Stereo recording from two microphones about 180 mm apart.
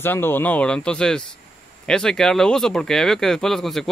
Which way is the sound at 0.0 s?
10° left (ahead or behind).